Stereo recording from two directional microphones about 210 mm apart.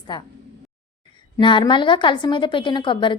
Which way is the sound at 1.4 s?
25° left (ahead or behind).